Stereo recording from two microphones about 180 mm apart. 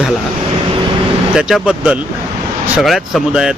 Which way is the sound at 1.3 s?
5° right (ahead or behind).